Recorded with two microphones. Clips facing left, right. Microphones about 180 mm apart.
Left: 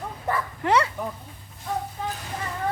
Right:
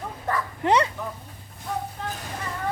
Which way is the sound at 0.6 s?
20° right (ahead or behind).